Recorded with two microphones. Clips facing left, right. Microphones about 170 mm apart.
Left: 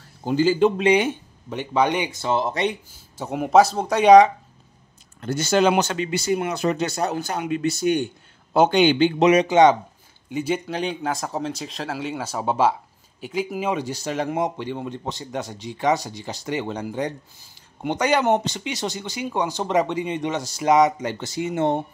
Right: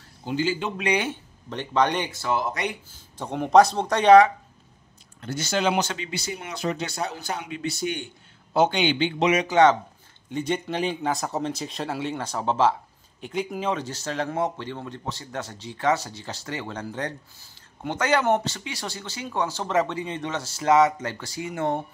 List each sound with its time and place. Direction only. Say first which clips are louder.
0.2 s a man's voice: left 8 dB; 40° left (ahead or behind)
0.8 s speech: left 7 dB; 15° left (ahead or behind)
2.2 s speech: left 5 dB; 25° left (ahead or behind)
3.2 s speech: left 1 dB; 5° left (ahead or behind)
5.2 s speech: left 6 dB; 45° left (ahead or behind)
9.4 s speech: even; 20° left (ahead or behind)
10.3 s speech: left 2 dB; 5° left (ahead or behind); by 21.8 s 20° left (ahead or behind)